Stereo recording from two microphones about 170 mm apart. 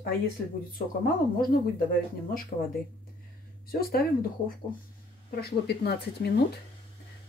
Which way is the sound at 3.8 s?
65° left (ahead or behind).